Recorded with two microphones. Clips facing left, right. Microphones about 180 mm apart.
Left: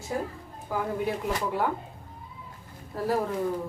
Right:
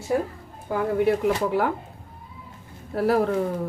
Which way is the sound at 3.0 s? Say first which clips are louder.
Right 6 dB; 75° right (ahead or behind).